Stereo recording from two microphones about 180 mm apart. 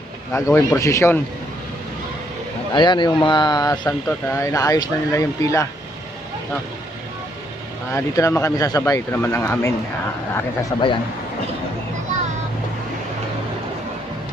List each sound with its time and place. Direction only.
0.3 s speech: 15° left (ahead or behind)
2.7 s speech: 25° left (ahead or behind)
7.9 s speech: 15° left (ahead or behind)
10.7 s speech: 20° left (ahead or behind)